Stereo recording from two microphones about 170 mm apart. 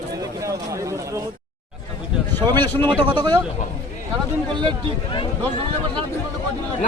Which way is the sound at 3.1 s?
25° right (ahead or behind).